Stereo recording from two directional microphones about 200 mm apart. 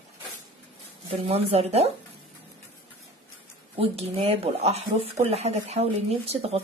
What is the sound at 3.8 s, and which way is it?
Speech, 30° right (ahead or behind).